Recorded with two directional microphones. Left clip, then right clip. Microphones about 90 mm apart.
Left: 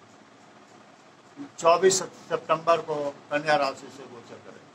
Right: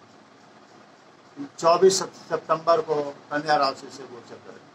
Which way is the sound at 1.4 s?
30° right (ahead or behind).